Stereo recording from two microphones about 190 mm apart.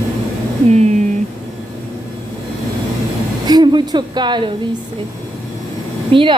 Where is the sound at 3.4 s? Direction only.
20° right (ahead or behind).